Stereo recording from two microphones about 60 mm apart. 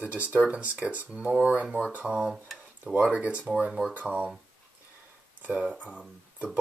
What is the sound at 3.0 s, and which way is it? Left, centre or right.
Speech, right.